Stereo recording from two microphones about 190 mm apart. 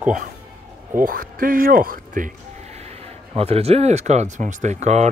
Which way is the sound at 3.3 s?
30° right (ahead or behind).